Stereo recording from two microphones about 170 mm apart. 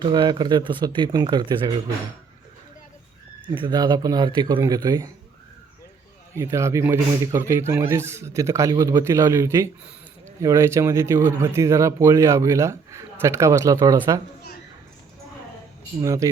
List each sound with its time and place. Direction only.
0.0 s speech: 25° right (ahead or behind)
3.5 s speech: 25° right (ahead or behind)
6.3 s speech: 15° right (ahead or behind)
16.0 s speech: 20° right (ahead or behind)